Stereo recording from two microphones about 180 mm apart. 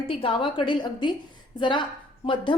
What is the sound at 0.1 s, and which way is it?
A woman's voice, 30° left (ahead or behind).